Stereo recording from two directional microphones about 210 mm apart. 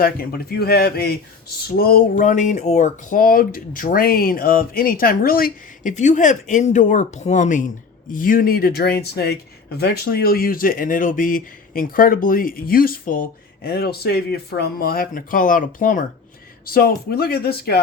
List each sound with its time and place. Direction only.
0.0 s speech: 45° left (ahead or behind)